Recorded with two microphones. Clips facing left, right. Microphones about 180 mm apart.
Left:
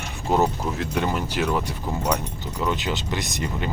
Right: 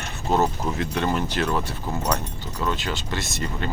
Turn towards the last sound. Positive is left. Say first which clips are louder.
# left 1 dB
turn(degrees=15)  # may be behind; listen again after turning